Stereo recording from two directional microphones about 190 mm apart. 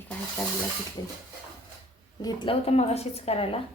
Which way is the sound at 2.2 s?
20° left (ahead or behind).